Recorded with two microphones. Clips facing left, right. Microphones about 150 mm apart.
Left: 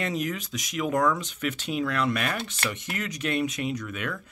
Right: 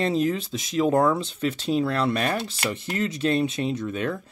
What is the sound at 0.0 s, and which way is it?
Speech, 30° right (ahead or behind).